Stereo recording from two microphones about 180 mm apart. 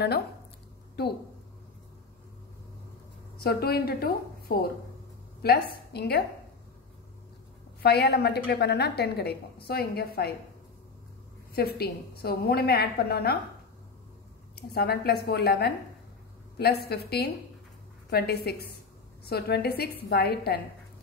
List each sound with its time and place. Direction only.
3.3 s a woman's voice: 60° left (ahead or behind)
7.8 s a woman's voice: 65° left (ahead or behind)
11.5 s a woman's voice: 60° left (ahead or behind)
14.5 s a woman's voice: 60° left (ahead or behind)